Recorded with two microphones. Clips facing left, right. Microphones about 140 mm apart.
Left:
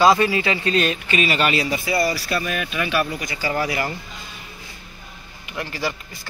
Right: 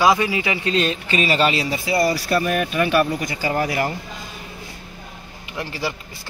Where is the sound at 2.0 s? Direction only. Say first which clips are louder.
Right 4 dB; 45° right (ahead or behind).